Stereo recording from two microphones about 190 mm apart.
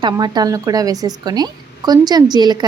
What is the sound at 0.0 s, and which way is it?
A woman's voice, 20° right (ahead or behind).